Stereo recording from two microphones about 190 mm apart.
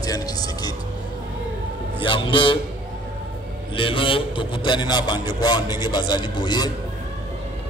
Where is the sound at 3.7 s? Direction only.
25° left (ahead or behind).